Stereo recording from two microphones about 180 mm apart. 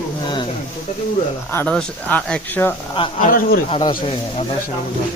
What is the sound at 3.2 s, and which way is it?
Speech, 50° left (ahead or behind).